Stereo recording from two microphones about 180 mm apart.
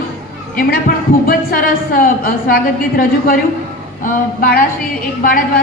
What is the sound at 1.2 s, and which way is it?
A woman's voice, 50° left (ahead or behind).